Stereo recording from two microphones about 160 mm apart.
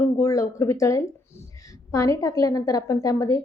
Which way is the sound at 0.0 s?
20° left (ahead or behind).